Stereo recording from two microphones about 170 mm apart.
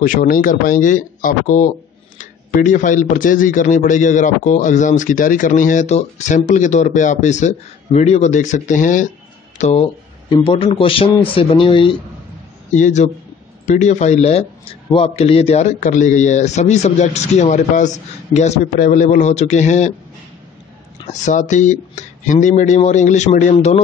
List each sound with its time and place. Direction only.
0.0 s a man's voice: 55° left (ahead or behind); by 12.0 s 30° left (ahead or behind)
12.7 s a man's voice: 45° left (ahead or behind)
21.1 s speech: 45° left (ahead or behind)